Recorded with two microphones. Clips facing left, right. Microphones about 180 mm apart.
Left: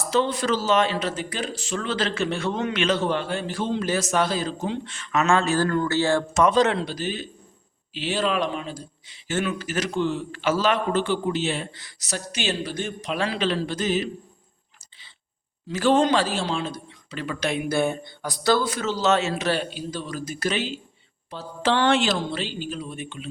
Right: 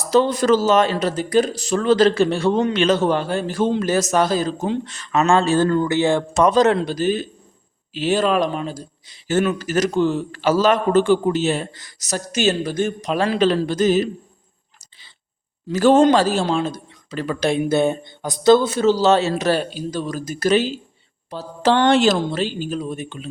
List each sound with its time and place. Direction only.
0.0 s speech: 40° right (ahead or behind); by 6.2 s 20° right (ahead or behind)
6.3 s speech: 40° right (ahead or behind)
15.7 s speech: 45° right (ahead or behind)